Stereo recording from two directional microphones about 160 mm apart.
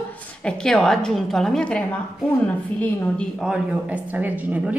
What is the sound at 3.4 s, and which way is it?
A man's voice, 5° right (ahead or behind).